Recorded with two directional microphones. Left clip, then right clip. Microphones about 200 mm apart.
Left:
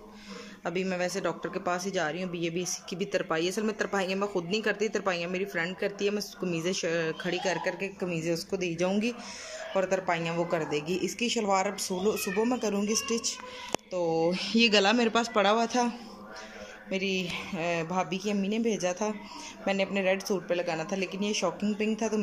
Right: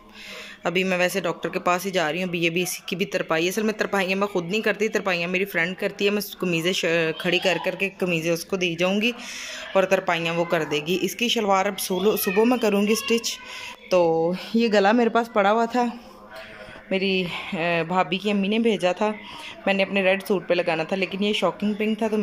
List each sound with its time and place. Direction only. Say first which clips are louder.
0.7 s speech: right 9 dB; centre (ahead or behind)
16.9 s speech: right 7 dB; centre (ahead or behind)